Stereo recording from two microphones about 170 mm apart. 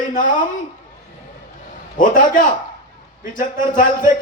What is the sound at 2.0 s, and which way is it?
A man's voice, 50° left (ahead or behind).